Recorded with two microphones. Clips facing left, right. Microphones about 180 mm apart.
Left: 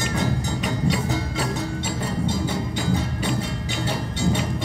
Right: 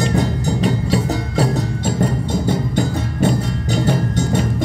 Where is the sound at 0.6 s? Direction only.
40° right (ahead or behind).